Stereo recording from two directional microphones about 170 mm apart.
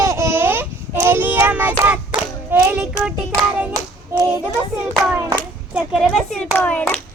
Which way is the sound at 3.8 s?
20° right (ahead or behind).